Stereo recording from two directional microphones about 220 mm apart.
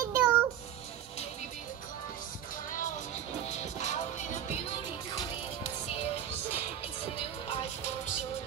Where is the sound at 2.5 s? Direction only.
35° left (ahead or behind).